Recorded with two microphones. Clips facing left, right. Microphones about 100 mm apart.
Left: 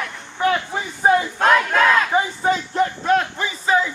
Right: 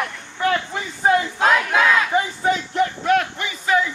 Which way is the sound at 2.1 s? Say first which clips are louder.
Left 1 dB; 30° left (ahead or behind).